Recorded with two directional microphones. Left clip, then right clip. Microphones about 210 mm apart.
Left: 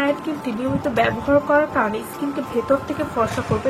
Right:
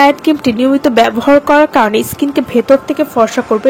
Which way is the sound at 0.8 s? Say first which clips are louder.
Right 6 dB; 50° right (ahead or behind).